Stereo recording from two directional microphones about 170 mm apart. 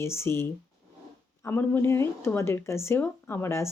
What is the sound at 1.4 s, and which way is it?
Speech, 15° left (ahead or behind).